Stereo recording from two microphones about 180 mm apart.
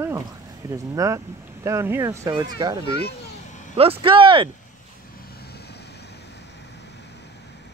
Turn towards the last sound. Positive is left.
turn(degrees=65)  # may be behind; listen again after turning